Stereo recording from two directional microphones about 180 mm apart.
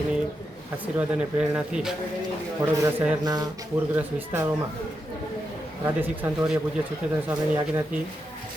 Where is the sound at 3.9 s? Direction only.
10° right (ahead or behind).